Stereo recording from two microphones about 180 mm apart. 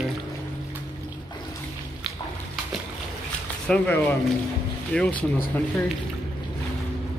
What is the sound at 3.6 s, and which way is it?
Speech, 5° left (ahead or behind).